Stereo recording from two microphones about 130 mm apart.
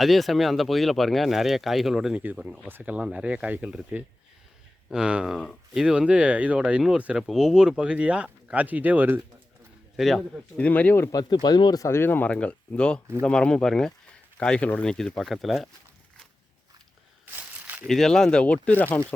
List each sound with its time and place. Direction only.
0.0 s speech: centre (ahead or behind)
4.9 s speech: 5° right (ahead or behind)
10.0 s speech: 5° left (ahead or behind)
17.3 s crumpling: 15° right (ahead or behind)
17.8 s speech: 5° left (ahead or behind)